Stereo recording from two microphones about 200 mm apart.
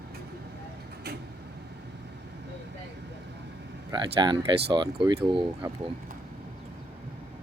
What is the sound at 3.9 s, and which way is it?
Speech, 20° right (ahead or behind).